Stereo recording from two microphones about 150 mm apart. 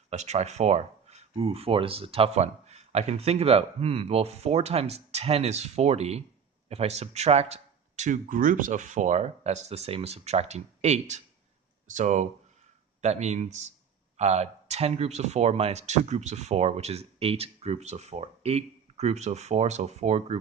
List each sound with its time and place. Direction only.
0.1 s speech: 50° right (ahead or behind)